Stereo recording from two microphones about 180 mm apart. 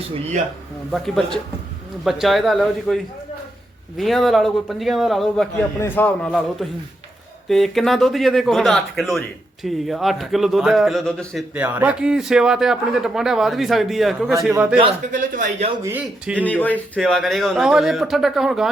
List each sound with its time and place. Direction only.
0.9 s a man's voice: centre (ahead or behind)
11.5 s a man's voice: 10° right (ahead or behind)
15.1 s speech: 45° right (ahead or behind)
15.8 s speech: 10° right (ahead or behind)
16.4 s a man's voice: 10° left (ahead or behind)